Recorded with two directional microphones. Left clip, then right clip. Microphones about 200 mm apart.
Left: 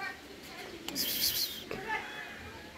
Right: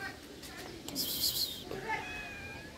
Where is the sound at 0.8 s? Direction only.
5° right (ahead or behind).